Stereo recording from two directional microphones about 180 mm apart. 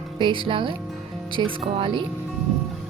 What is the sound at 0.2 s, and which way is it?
Speech, 25° right (ahead or behind).